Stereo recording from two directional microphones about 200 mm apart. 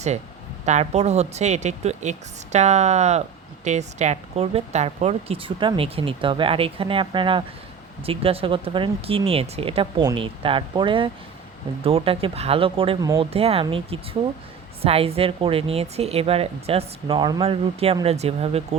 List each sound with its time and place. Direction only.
0.6 s a woman's voice: 35° right (ahead or behind)